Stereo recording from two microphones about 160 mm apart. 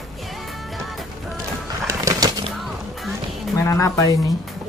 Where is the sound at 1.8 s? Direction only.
20° right (ahead or behind).